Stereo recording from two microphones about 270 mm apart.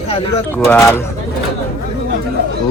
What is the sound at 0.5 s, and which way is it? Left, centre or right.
Speech, centre.